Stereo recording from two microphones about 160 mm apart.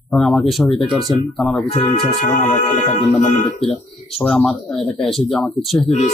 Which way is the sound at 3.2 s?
40° left (ahead or behind).